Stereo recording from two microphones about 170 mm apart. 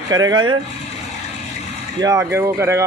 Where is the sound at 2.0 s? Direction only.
15° right (ahead or behind).